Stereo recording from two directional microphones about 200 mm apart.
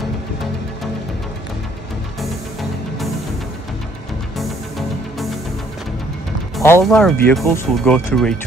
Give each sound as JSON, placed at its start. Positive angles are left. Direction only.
{"t": 6.6, "sound": "speech", "side_deg": 10}